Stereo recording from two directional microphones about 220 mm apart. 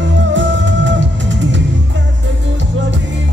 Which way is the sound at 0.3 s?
55° right (ahead or behind).